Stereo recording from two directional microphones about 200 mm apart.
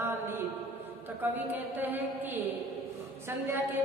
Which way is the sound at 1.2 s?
10° right (ahead or behind).